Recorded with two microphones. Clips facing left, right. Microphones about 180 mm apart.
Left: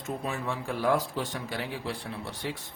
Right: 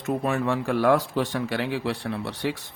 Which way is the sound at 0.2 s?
70° right (ahead or behind).